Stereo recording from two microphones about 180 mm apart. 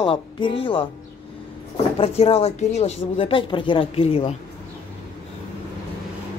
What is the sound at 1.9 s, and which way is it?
Speech, 35° left (ahead or behind).